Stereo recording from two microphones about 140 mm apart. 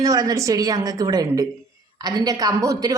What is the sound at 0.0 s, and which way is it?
A woman's voice, 25° right (ahead or behind).